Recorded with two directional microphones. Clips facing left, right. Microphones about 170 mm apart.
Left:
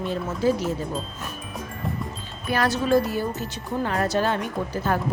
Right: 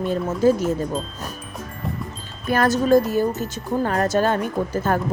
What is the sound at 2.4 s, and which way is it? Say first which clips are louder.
A woman's voice: right 5 dB; 45° right (ahead or behind).